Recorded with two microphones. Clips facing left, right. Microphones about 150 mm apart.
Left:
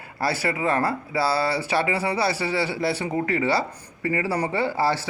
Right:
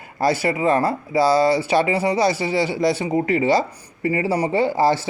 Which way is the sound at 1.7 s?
15° right (ahead or behind).